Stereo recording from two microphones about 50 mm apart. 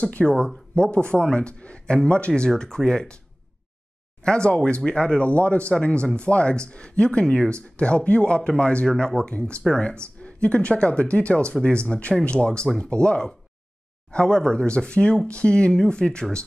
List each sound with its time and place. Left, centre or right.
0.0 s a man's voice: left
4.2 s a man's voice: centre